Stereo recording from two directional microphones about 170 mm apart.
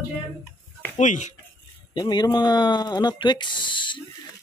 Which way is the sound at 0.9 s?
45° left (ahead or behind).